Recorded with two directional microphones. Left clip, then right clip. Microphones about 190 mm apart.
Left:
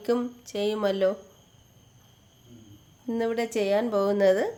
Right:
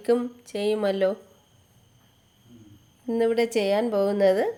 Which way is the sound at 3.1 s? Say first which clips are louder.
Right 5 dB; 15° right (ahead or behind).